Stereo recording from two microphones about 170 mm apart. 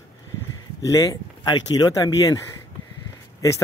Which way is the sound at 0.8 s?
20° left (ahead or behind).